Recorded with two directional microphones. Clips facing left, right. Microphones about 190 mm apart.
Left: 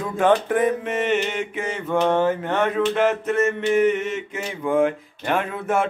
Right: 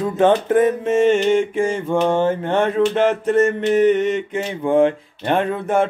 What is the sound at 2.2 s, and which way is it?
Mantra, 30° right (ahead or behind).